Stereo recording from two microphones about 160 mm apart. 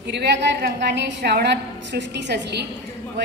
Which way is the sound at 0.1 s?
90° right.